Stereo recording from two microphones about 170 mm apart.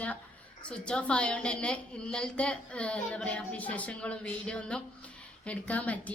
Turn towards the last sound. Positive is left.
turn(degrees=10)  # may be behind; listen again after turning